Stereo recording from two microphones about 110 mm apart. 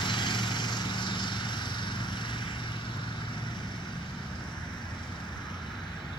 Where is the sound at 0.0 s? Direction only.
45° left (ahead or behind).